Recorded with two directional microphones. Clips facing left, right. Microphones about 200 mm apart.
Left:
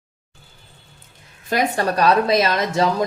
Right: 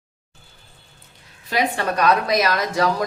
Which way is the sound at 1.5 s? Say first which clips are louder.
Left 2 dB; 45° left (ahead or behind).